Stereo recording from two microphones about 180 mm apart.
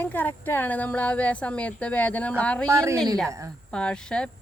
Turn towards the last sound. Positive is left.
turn(degrees=5)  # may be behind; listen again after turning